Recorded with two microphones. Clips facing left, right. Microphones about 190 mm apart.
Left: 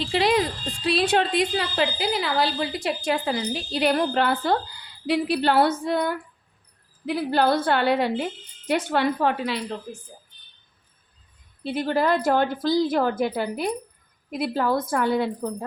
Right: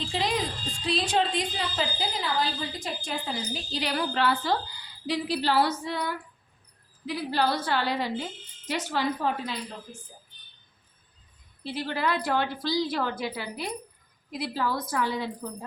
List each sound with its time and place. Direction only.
0.0 s a woman's voice: 70° left (ahead or behind)
11.6 s a woman's voice: 55° left (ahead or behind)